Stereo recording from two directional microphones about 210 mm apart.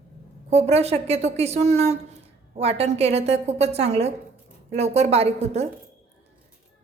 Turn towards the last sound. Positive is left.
turn(degrees=-30)  # may be behind; listen again after turning